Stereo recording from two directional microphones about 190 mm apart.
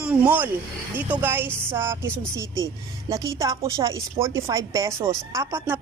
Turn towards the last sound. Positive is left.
turn(degrees=-10)  # may be behind; listen again after turning